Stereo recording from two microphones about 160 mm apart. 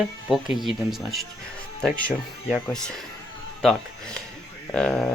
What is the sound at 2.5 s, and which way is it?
Speech, 5° left (ahead or behind).